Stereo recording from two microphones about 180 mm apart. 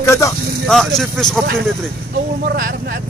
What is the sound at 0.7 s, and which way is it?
Speech, centre (ahead or behind).